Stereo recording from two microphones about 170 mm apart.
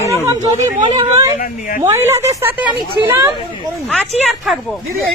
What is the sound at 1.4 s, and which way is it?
Speech, 55° left (ahead or behind).